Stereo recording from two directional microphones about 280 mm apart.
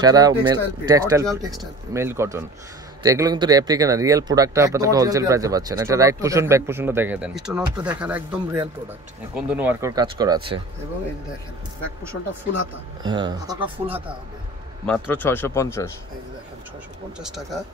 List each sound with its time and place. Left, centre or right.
0.0 s speech: centre
13.0 s speech: centre
14.9 s speech: centre